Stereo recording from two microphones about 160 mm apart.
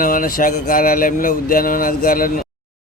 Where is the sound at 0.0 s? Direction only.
60° left (ahead or behind).